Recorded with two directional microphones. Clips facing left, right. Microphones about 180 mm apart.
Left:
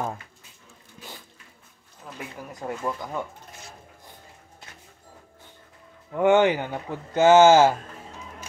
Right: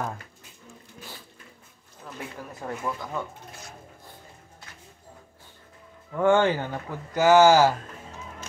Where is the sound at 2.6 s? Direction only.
15° left (ahead or behind).